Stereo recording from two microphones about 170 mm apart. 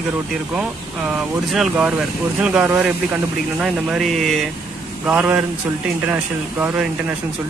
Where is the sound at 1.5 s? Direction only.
5° right (ahead or behind).